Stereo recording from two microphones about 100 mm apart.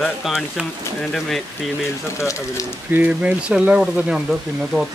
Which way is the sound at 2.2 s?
30° left (ahead or behind).